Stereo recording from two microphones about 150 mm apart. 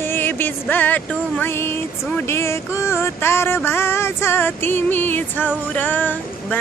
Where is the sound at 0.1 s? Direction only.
15° left (ahead or behind).